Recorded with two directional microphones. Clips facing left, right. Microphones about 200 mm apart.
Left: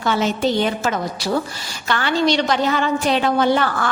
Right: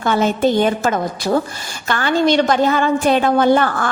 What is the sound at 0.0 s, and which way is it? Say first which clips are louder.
A woman's voice: right 3 dB; 50° right (ahead or behind).